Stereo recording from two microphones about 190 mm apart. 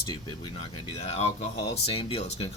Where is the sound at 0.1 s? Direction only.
25° left (ahead or behind).